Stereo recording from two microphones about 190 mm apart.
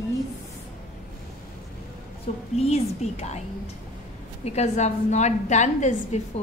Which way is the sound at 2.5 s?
35° left (ahead or behind).